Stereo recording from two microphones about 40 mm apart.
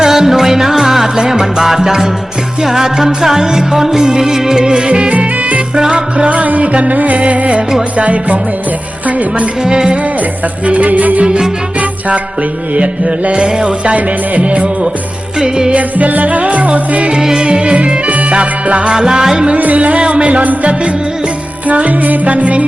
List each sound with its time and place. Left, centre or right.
0.0 s music: centre
5.1 s music: right
5.7 s music: right
6.3 s music: right
9.6 s music: right
10.7 s music: right
13.9 s music: right
15.4 s music: centre
15.7 s music: right
17.1 s music: centre
19.5 s music: right